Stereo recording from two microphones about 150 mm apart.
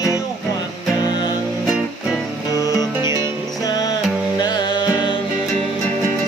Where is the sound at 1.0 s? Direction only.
30° left (ahead or behind).